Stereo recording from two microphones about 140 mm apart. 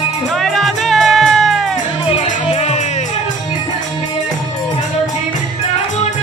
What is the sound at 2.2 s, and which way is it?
Music, 55° left (ahead or behind).